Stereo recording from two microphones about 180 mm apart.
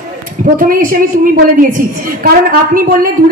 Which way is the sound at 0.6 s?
50° right (ahead or behind).